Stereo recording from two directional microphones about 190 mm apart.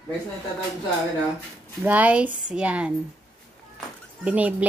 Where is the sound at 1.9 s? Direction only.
10° right (ahead or behind).